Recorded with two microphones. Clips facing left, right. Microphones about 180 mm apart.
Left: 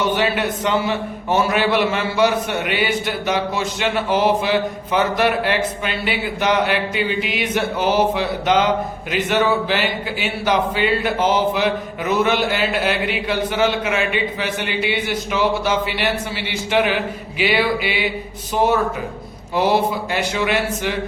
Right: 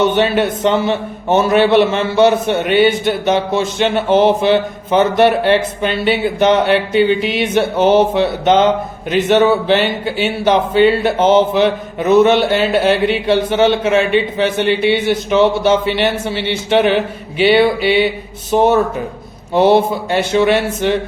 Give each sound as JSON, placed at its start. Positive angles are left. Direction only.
{"t": 0.0, "sound": "speech", "side_deg": -25}
{"t": 19.5, "sound": "speech", "side_deg": -30}